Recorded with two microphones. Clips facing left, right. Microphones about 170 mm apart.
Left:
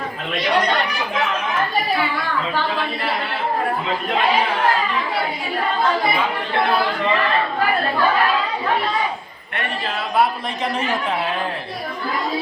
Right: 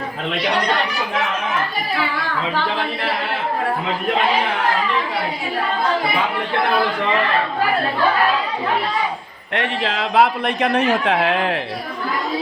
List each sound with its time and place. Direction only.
9.6 s a man's voice: 90° right; by 11.5 s 70° right (ahead or behind)